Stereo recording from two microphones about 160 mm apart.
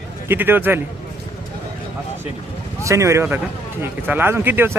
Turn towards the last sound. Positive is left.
turn(degrees=-15)  # may be behind; listen again after turning